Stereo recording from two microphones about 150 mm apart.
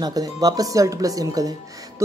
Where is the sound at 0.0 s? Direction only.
25° right (ahead or behind).